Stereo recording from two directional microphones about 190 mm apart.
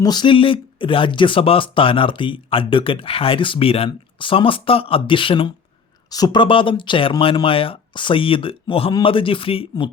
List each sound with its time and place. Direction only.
0.0 s speech: 20° left (ahead or behind)